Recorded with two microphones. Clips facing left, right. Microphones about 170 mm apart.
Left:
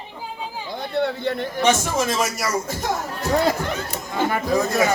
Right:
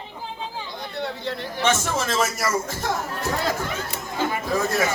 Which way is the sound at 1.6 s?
15° left (ahead or behind).